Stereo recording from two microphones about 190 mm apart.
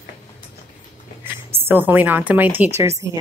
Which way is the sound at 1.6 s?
10° right (ahead or behind).